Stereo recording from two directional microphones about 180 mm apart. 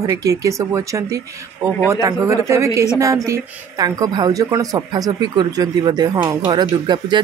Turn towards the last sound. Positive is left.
turn(degrees=-25)  # may be behind; listen again after turning